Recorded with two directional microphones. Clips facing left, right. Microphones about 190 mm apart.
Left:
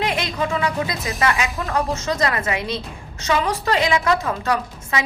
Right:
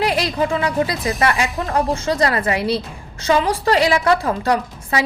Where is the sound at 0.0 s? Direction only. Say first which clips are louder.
Right 4 dB; 30° right (ahead or behind).